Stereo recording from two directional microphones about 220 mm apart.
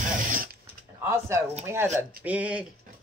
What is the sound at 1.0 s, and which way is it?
Speech, 10° right (ahead or behind).